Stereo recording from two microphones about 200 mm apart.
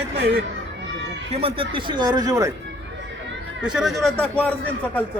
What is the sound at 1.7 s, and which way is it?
Speech, 25° right (ahead or behind).